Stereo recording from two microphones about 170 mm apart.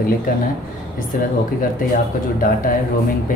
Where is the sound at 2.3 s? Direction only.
55° left (ahead or behind).